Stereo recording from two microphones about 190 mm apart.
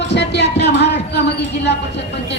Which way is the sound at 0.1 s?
65° left (ahead or behind).